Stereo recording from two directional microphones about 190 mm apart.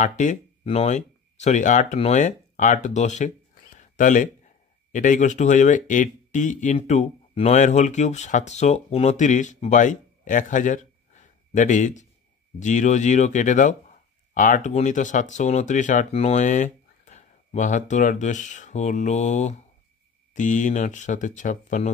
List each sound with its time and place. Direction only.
0.0 s speech: 40° left (ahead or behind)
3.7 s a sound: 40° left (ahead or behind)
4.9 s speech: 40° left (ahead or behind)